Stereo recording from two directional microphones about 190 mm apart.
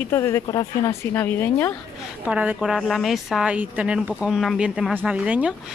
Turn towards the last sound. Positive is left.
turn(degrees=-5)  # may be behind; listen again after turning